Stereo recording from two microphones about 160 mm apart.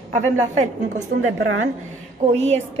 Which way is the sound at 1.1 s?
90° right.